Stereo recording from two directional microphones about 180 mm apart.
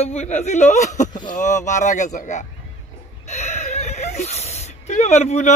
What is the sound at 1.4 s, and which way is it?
Speech, 45° left (ahead or behind).